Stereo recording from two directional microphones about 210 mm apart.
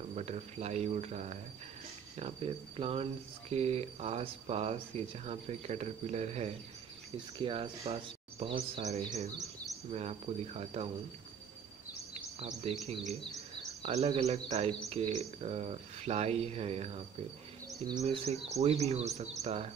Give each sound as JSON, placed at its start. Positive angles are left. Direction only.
{"t": 0.1, "sound": "speech", "side_deg": -30}
{"t": 12.1, "sound": "a sound", "side_deg": -30}
{"t": 13.8, "sound": "speech", "side_deg": -30}
{"t": 18.0, "sound": "speech", "side_deg": -30}